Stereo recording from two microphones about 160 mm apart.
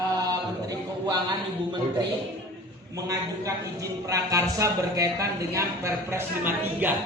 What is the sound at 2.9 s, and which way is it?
A man's voice, 20° right (ahead or behind).